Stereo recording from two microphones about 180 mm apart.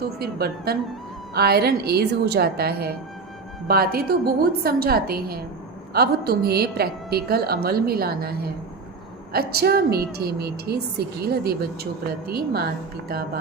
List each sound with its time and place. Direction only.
0.2 s a woman's voice: 60° right (ahead or behind)